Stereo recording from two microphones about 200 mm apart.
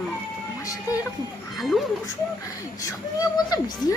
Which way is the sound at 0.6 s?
15° left (ahead or behind).